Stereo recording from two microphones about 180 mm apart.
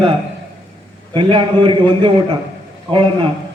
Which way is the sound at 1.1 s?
30° right (ahead or behind).